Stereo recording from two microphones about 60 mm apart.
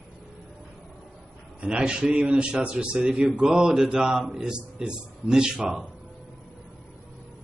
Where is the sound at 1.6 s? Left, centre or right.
Centre.